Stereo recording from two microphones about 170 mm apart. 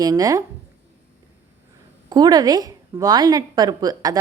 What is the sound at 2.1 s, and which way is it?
A woman's voice, 25° right (ahead or behind).